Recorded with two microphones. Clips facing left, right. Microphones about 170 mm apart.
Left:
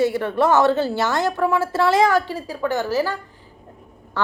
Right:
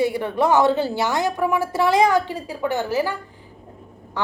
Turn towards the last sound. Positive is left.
turn(degrees=-15)  # may be behind; listen again after turning